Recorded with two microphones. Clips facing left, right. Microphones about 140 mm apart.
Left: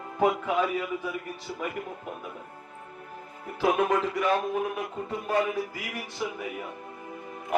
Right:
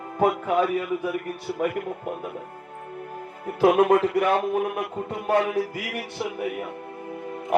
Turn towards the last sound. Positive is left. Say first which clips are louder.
# right 6 dB
turn(degrees=-65)  # may be behind; listen again after turning